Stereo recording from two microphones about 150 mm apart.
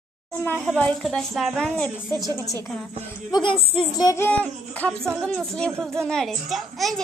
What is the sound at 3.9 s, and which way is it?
A child's voice, 20° left (ahead or behind).